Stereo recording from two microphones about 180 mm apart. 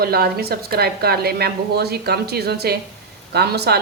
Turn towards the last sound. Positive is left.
turn(degrees=-65)  # may be behind; listen again after turning